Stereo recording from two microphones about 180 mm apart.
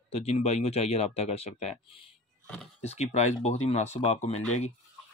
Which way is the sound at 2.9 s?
40° left (ahead or behind).